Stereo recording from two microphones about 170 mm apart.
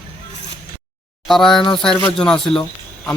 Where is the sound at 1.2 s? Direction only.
Centre (ahead or behind).